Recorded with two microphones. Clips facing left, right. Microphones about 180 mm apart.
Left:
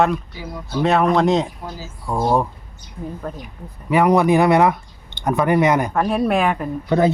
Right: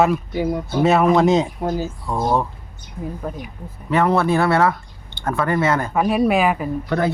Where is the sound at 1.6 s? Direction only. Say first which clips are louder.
Right 10 dB; 55° right (ahead or behind).